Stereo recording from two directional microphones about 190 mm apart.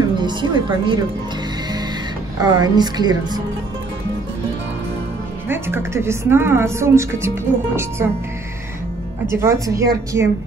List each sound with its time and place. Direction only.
0.2 s speech: 25° right (ahead or behind)
2.4 s speech: 20° right (ahead or behind)
5.5 s a woman's voice: 15° right (ahead or behind)
9.4 s a woman's voice: 15° right (ahead or behind)